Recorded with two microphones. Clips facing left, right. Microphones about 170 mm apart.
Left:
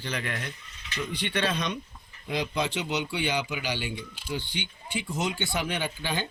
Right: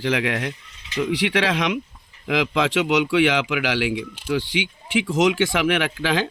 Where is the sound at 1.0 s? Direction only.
90° right.